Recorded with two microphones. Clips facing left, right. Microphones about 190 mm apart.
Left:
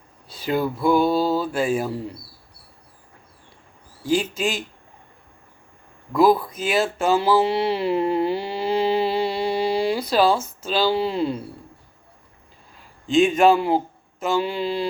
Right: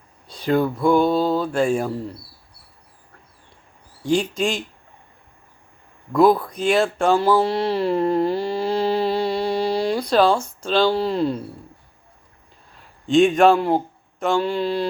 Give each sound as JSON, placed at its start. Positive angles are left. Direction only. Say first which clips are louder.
{"t": 0.3, "sound": "speech", "louder": "right 3 dB", "side_deg": 5}
{"t": 4.0, "sound": "speech", "louder": "right 2 dB", "side_deg": 5}
{"t": 6.1, "sound": "speech", "louder": "right 1 dB", "side_deg": 0}
{"t": 12.7, "sound": "speech", "louder": "right 2 dB", "side_deg": 0}